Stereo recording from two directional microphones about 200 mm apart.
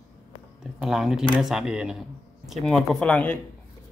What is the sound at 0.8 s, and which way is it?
Speech, centre (ahead or behind).